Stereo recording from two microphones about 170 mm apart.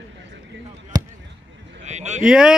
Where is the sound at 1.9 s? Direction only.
45° right (ahead or behind).